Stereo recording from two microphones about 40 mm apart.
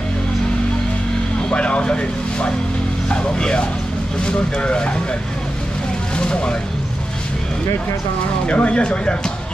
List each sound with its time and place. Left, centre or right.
1.5 s vehicle: left
3.1 s speech: left
6.1 s speech: left
8.5 s speech: left